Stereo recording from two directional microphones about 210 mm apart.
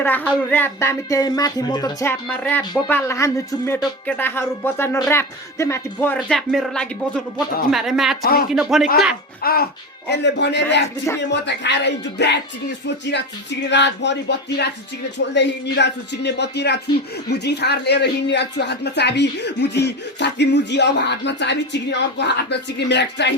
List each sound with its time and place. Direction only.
0.0 s a sound: 10° left (ahead or behind)
6.1 s speech: centre (ahead or behind)
9.4 s speech: 45° left (ahead or behind)
10.1 s speech: 55° left (ahead or behind)
13.7 s speech: 55° left (ahead or behind)